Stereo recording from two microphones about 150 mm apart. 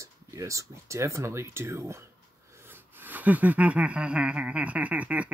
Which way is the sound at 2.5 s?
15° right (ahead or behind).